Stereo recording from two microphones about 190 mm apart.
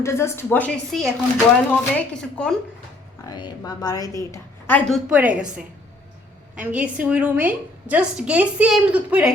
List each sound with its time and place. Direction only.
0.0 s a woman's voice: 15° left (ahead or behind)
3.2 s a woman's voice: 20° left (ahead or behind)
5.0 s a woman's voice: 5° right (ahead or behind)